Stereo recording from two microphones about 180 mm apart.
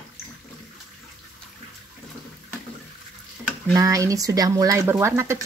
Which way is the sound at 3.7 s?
20° right (ahead or behind).